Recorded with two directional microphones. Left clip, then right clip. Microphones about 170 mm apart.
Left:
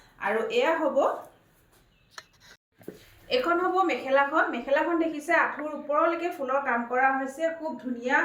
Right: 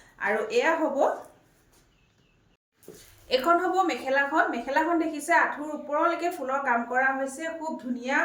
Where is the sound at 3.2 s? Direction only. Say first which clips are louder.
Right 2 dB; 25° right (ahead or behind).